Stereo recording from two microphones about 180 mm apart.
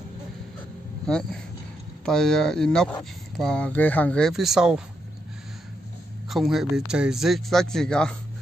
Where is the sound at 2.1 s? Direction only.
5° left (ahead or behind).